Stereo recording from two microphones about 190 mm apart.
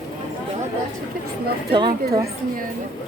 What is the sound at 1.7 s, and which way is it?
Speech, 25° right (ahead or behind).